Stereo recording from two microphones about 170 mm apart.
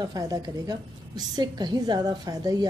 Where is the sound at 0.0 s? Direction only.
20° right (ahead or behind).